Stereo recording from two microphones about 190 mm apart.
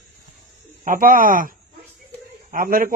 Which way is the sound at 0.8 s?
45° right (ahead or behind).